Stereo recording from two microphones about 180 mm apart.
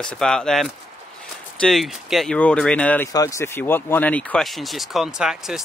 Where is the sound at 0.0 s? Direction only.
5° left (ahead or behind).